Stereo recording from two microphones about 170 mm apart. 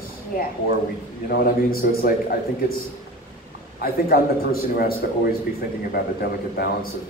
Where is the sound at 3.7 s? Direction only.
60° left (ahead or behind).